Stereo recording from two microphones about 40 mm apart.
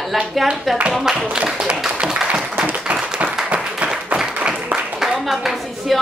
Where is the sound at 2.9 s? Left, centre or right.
Right.